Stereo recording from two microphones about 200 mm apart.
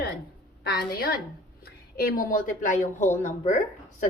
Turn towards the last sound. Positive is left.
turn(degrees=35)  # may be behind; listen again after turning